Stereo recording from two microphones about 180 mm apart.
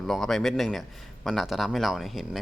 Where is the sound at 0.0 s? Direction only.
Centre (ahead or behind).